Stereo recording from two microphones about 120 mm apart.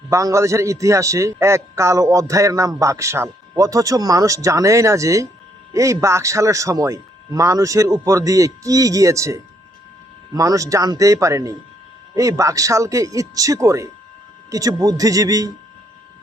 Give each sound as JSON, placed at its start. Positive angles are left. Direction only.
{"t": 0.1, "sound": "a man's voice", "side_deg": -25}